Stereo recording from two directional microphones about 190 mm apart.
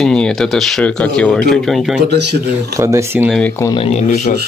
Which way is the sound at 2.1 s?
55° right (ahead or behind).